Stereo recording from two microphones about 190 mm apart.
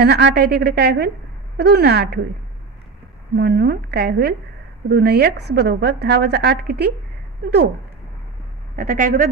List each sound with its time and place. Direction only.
0.0 s a woman's voice: 60° right (ahead or behind)
3.3 s a woman's voice: 55° right (ahead or behind)
8.7 s speech: 45° right (ahead or behind)